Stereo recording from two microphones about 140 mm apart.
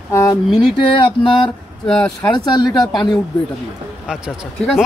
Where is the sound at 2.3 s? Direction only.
30° left (ahead or behind).